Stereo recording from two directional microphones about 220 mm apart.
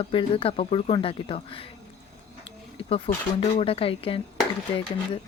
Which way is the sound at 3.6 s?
25° left (ahead or behind).